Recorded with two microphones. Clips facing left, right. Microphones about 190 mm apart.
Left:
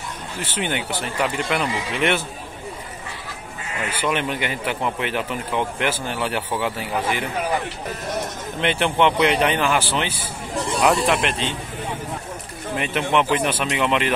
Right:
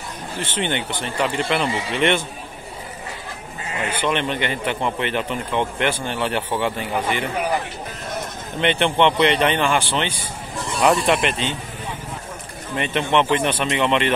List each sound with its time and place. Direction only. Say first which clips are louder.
0.4 s speech: right 1 dB; 5° left (ahead or behind)
4.0 s speech: right 1 dB; 5° left (ahead or behind)
8.5 s speech: right 2 dB; centre (ahead or behind)
12.7 s speech: right 1 dB; 5° left (ahead or behind)